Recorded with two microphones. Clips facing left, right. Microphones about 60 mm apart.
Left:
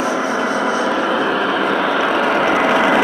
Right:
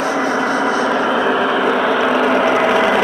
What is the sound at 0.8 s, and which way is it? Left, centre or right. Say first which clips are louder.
Vehicle: right 2 dB; centre.